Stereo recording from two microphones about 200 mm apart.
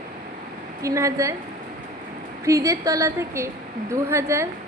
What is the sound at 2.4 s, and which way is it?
A woman's voice, 15° right (ahead or behind).